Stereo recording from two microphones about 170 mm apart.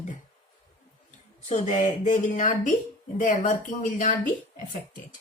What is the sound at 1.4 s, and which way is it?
A woman's voice, 45° left (ahead or behind).